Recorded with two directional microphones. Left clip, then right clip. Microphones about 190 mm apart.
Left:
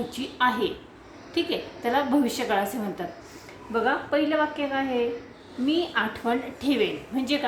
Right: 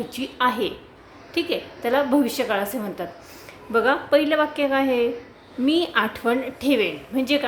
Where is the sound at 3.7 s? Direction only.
40° right (ahead or behind).